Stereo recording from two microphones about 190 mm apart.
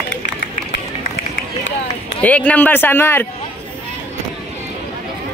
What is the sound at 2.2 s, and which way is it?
A man's voice, 5° left (ahead or behind).